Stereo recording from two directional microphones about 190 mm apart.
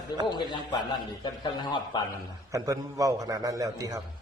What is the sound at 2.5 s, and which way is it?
A man's voice, 20° right (ahead or behind).